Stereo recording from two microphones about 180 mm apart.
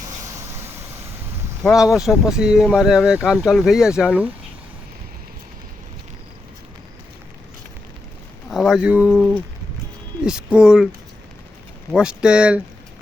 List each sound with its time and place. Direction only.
0.3 s vehicle: 15° right (ahead or behind)
1.6 s speech: centre (ahead or behind)
8.4 s speech: centre (ahead or behind)
11.9 s speech: 5° right (ahead or behind)